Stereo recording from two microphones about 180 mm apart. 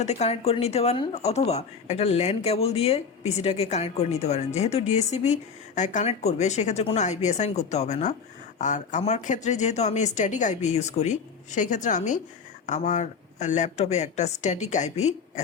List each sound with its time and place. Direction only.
0.0 s speech: 40° left (ahead or behind)